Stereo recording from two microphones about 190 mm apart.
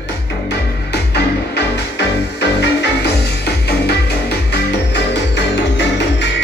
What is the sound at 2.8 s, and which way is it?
Music, 60° left (ahead or behind).